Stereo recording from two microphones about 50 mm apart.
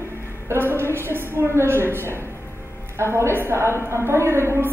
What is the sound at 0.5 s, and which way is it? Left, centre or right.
A woman's voice, right.